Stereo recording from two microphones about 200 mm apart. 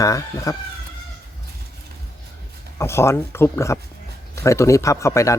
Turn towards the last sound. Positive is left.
turn(degrees=15)  # may be behind; listen again after turning